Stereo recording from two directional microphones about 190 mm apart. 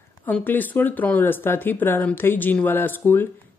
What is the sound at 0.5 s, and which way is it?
Speech, 10° left (ahead or behind).